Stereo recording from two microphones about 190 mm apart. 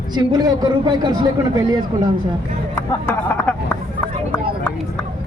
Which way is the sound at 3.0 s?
10° left (ahead or behind).